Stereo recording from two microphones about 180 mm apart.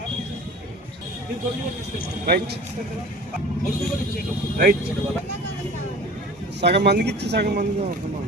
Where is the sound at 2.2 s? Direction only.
60° right (ahead or behind).